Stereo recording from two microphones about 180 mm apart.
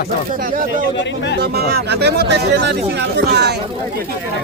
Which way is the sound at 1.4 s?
60° right (ahead or behind).